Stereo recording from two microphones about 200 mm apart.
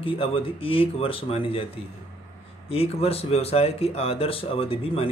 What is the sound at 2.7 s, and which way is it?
A man's voice, 30° left (ahead or behind).